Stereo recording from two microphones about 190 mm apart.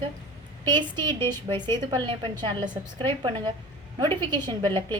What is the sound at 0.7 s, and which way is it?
A woman's voice, 25° right (ahead or behind).